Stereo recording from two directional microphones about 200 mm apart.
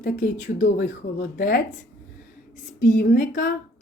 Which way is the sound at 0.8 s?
60° left (ahead or behind).